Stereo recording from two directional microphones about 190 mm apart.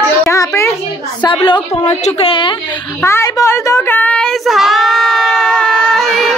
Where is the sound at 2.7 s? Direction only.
15° left (ahead or behind).